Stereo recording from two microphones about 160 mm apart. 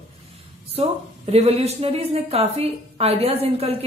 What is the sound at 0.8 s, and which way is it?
A woman's voice, 40° right (ahead or behind).